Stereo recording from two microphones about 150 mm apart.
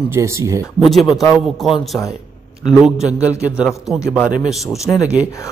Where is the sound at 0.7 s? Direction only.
Centre (ahead or behind).